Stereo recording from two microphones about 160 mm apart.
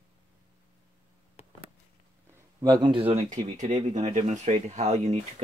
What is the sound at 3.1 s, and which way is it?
Speech, 45° right (ahead or behind).